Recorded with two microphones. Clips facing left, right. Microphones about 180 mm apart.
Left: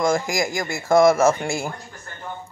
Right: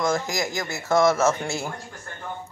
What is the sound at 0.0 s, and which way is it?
Speech, 10° left (ahead or behind).